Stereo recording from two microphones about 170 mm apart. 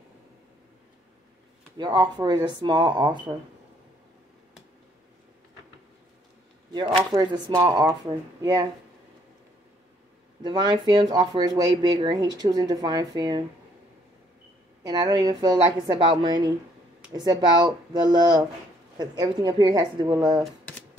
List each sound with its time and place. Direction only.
1.8 s speech: 25° right (ahead or behind)
6.7 s speech: 25° right (ahead or behind)
10.4 s speech: 25° right (ahead or behind)
14.8 s speech: 20° right (ahead or behind)